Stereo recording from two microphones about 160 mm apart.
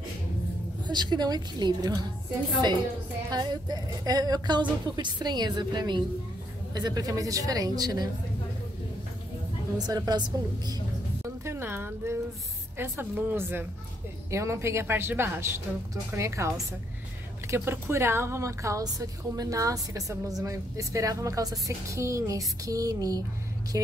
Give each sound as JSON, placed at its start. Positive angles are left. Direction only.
{"t": 0.8, "sound": "a woman's voice", "side_deg": -25}
{"t": 3.3, "sound": "a woman's voice", "side_deg": -25}
{"t": 9.8, "sound": "a woman's voice", "side_deg": -25}
{"t": 11.2, "sound": "music", "side_deg": -15}
{"t": 12.7, "sound": "a woman's voice", "side_deg": -15}